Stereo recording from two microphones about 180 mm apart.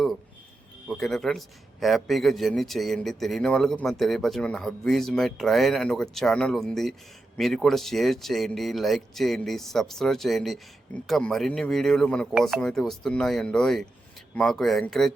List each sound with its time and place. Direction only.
0.9 s a man's voice: centre (ahead or behind)